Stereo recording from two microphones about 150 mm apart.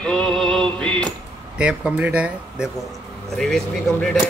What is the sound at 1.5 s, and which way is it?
Speech, 5° right (ahead or behind).